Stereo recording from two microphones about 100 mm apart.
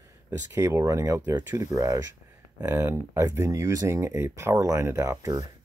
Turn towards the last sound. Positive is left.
turn(degrees=-35)  # may be behind; listen again after turning